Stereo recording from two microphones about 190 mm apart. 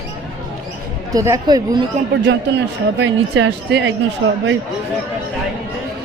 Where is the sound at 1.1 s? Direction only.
20° right (ahead or behind).